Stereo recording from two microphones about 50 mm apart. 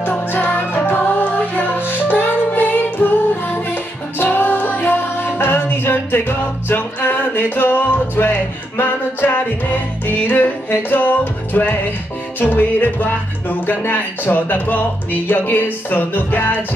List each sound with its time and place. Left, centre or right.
0.1 s music: left
12.4 s speech: left